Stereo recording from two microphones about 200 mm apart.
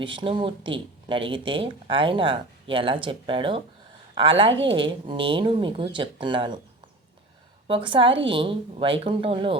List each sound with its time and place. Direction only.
0.0 s speech: 25° right (ahead or behind)
7.7 s speech: 25° right (ahead or behind)